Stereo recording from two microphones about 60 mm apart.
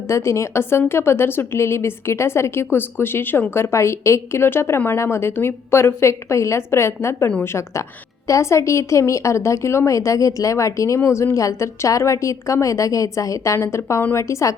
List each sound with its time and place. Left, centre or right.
0.1 s a woman's voice: left
13.6 s a woman's voice: left